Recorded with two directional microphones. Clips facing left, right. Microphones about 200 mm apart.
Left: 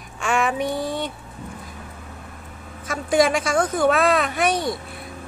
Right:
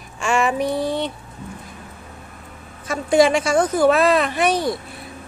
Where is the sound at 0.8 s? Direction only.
25° right (ahead or behind).